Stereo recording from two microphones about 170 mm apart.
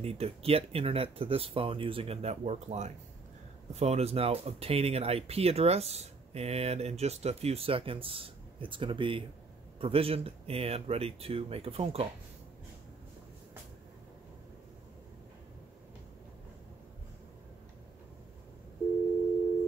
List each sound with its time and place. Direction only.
0.0 s speech: 35° right (ahead or behind)